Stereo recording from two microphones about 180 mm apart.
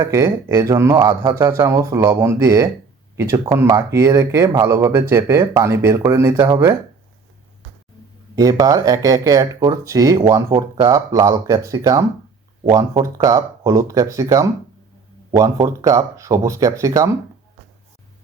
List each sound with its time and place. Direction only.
0.0 s speech: 15° right (ahead or behind)
8.4 s speech: 20° right (ahead or behind)